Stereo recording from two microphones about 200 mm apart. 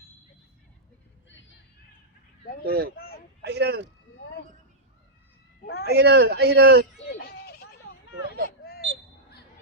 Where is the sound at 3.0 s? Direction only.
50° left (ahead or behind).